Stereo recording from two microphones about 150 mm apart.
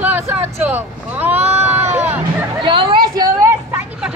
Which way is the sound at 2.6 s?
35° right (ahead or behind).